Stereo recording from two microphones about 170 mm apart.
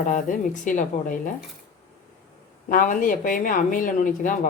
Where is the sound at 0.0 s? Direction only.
50° left (ahead or behind).